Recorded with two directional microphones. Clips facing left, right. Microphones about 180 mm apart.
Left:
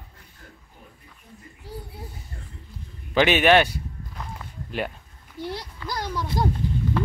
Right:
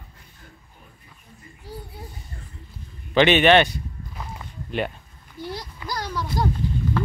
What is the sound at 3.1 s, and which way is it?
Speech, 5° left (ahead or behind).